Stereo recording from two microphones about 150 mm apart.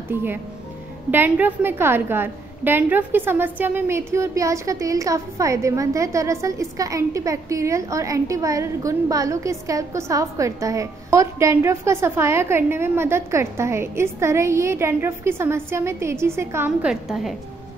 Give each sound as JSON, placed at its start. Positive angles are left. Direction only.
{"t": 0.1, "sound": "a woman's voice", "side_deg": -15}